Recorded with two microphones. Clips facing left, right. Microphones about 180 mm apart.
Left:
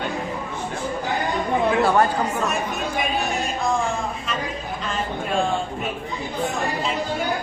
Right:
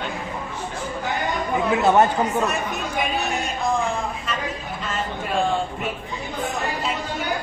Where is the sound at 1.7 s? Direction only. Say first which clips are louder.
Right 2 dB; 20° right (ahead or behind).